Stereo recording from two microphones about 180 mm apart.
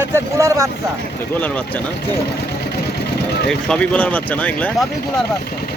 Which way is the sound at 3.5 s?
5° left (ahead or behind).